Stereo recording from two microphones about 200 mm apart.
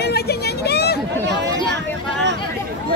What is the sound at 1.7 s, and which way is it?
Vehicle, 60° right (ahead or behind).